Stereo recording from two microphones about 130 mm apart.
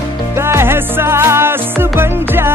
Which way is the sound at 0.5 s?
20° right (ahead or behind).